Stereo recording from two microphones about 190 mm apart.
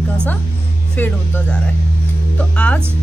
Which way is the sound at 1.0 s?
10° left (ahead or behind).